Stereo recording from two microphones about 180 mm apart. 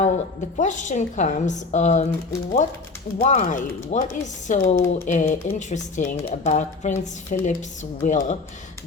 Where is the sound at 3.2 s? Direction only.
40° left (ahead or behind).